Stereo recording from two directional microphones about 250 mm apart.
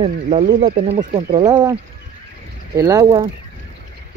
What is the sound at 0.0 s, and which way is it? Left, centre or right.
Speech, right.